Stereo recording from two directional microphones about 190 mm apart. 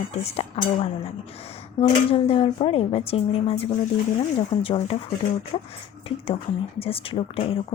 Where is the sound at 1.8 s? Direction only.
30° left (ahead or behind).